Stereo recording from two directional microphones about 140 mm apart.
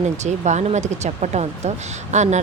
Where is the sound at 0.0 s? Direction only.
55° right (ahead or behind).